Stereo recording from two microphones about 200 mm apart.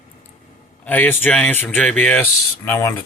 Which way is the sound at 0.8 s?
10° left (ahead or behind).